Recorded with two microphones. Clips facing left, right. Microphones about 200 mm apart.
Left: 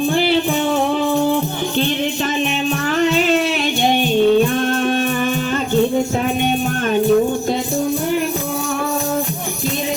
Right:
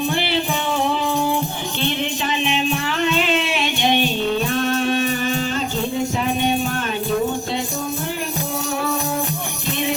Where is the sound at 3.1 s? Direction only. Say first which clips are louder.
Left 4 dB; 45° left (ahead or behind).